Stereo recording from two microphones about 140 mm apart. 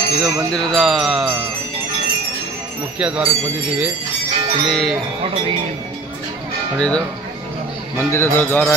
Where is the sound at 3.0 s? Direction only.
10° right (ahead or behind).